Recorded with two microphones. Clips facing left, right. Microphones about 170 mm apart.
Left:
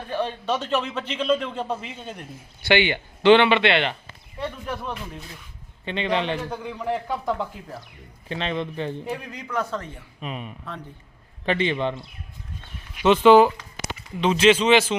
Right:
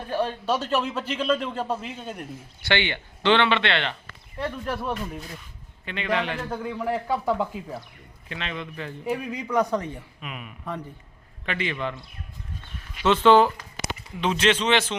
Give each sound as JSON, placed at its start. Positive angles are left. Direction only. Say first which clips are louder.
{"t": 0.1, "sound": "a man's voice", "louder": "even", "side_deg": -5}
{"t": 2.6, "sound": "speech", "louder": "left 5 dB", "side_deg": 15}
{"t": 4.4, "sound": "a man's voice", "louder": "right 1 dB", "side_deg": 0}
{"t": 5.8, "sound": "a man's voice", "louder": "left 2 dB", "side_deg": 25}
{"t": 6.5, "sound": "a man's voice", "louder": "even", "side_deg": -5}
{"t": 8.3, "sound": "a man's voice", "louder": "left 6 dB", "side_deg": 30}
{"t": 9.3, "sound": "a man's voice", "louder": "right 6 dB", "side_deg": -10}
{"t": 10.2, "sound": "a man's voice", "louder": "left 5 dB", "side_deg": 30}
{"t": 13.0, "sound": "speech", "louder": "left 3 dB", "side_deg": 15}
{"t": 14.2, "sound": "a man's voice", "louder": "left 5 dB", "side_deg": 0}